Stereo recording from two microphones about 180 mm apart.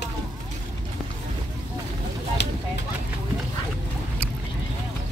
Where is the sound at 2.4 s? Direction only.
70° left (ahead or behind).